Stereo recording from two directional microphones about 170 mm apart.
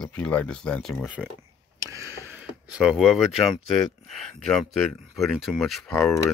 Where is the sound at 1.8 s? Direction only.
20° right (ahead or behind).